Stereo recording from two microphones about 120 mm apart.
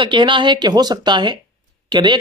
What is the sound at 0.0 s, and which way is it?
Speech, 40° right (ahead or behind).